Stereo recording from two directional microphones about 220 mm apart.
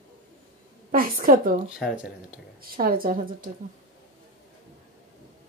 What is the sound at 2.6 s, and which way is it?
Speech, 40° right (ahead or behind).